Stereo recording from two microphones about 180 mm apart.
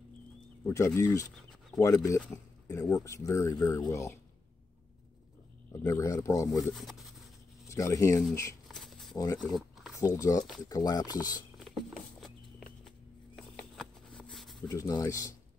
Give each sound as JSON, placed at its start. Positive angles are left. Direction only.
{"t": 0.7, "sound": "speech", "side_deg": 15}
{"t": 5.7, "sound": "speech", "side_deg": 15}
{"t": 6.7, "sound": "speech", "side_deg": 0}
{"t": 7.6, "sound": "speech", "side_deg": 15}
{"t": 8.6, "sound": "a sound", "side_deg": 0}
{"t": 9.1, "sound": "speech", "side_deg": 20}
{"t": 9.4, "sound": "a sound", "side_deg": 0}
{"t": 9.9, "sound": "speech", "side_deg": 20}
{"t": 12.2, "sound": "walk", "side_deg": 0}
{"t": 13.4, "sound": "patter", "side_deg": 5}
{"t": 14.7, "sound": "speech", "side_deg": 20}